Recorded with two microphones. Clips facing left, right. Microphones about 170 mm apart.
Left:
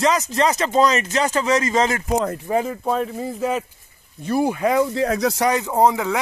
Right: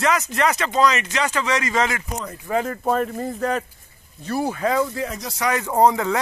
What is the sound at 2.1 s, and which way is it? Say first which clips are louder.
Speech: left 10 dB; 90° left.